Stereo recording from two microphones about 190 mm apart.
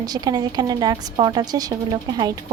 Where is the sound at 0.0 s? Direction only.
20° right (ahead or behind).